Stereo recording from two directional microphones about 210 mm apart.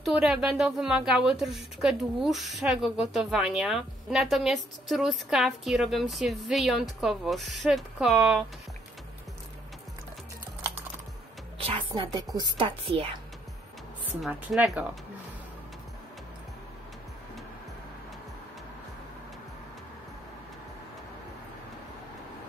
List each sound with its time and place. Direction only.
0.0 s a woman's voice: 5° right (ahead or behind)
11.5 s music: 25° right (ahead or behind)
12.4 s a woman's voice: 25° right (ahead or behind)
14.0 s a woman's voice: 5° right (ahead or behind)